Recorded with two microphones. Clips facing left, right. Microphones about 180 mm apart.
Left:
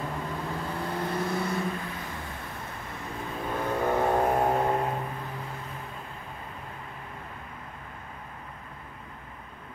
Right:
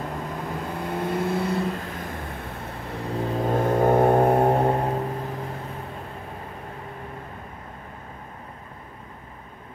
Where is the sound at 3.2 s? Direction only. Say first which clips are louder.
Right 9 dB; 40° right (ahead or behind).